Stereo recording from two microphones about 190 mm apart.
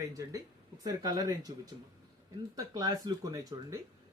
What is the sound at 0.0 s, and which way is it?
Speech, 15° right (ahead or behind).